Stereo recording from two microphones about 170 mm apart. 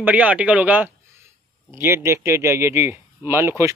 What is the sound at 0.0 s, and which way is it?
Speech, 10° right (ahead or behind).